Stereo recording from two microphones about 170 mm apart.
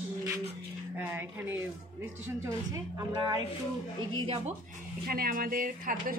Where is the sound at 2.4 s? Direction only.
20° right (ahead or behind).